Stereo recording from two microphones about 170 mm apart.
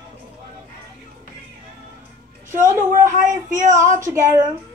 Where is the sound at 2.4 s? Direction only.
50° right (ahead or behind).